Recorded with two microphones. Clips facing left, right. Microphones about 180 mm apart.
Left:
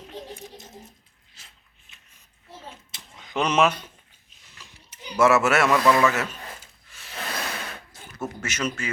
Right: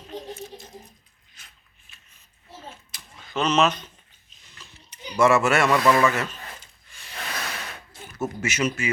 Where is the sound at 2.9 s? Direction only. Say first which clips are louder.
Left 1 dB; 20° left (ahead or behind).